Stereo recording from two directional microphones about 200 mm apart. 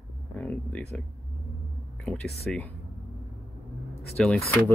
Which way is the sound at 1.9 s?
5° left (ahead or behind).